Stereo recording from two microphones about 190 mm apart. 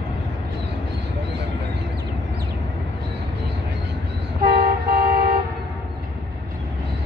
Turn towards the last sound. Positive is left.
turn(degrees=-50)  # may be behind; listen again after turning